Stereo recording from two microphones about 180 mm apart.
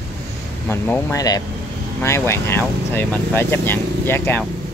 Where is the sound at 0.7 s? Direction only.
15° left (ahead or behind).